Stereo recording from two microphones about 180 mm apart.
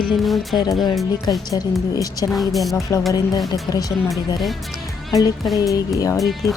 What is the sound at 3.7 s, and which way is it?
Speech, 20° left (ahead or behind).